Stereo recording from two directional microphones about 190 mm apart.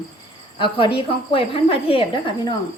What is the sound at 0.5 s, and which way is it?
A woman's voice, 25° left (ahead or behind).